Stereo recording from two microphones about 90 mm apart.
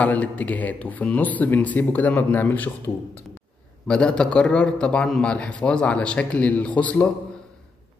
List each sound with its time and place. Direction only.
0.0 s a man's voice: 15° left (ahead or behind)
3.8 s a man's voice: 10° left (ahead or behind)